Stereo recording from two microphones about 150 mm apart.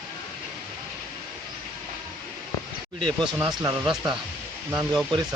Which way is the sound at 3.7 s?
30° right (ahead or behind).